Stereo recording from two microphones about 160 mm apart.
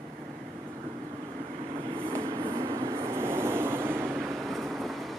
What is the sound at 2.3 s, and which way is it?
Train, 30° right (ahead or behind).